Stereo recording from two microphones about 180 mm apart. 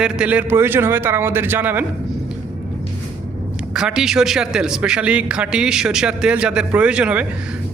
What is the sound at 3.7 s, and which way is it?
A man's voice, 5° right (ahead or behind).